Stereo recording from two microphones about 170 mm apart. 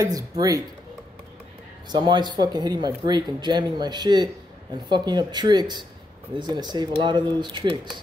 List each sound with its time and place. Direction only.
0.0 s speech: 20° right (ahead or behind)
1.9 s speech: 25° right (ahead or behind)